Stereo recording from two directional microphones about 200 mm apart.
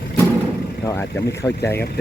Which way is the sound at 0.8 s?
15° left (ahead or behind).